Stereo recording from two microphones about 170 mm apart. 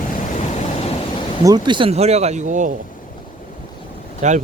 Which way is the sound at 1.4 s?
25° right (ahead or behind).